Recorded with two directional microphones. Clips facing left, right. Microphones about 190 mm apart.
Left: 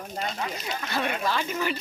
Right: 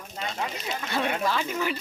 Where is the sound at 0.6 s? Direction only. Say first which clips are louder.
Right 1 dB; centre (ahead or behind).